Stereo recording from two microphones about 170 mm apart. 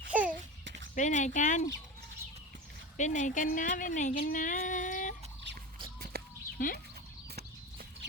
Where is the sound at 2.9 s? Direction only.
45° left (ahead or behind).